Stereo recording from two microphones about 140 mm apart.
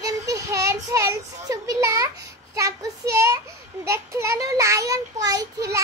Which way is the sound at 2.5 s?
25° right (ahead or behind).